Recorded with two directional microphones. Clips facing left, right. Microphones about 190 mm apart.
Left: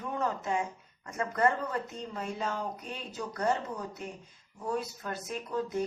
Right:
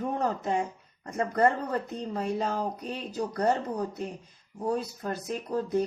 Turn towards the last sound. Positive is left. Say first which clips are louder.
# right 5 dB
turn(degrees=-35)  # may be behind; listen again after turning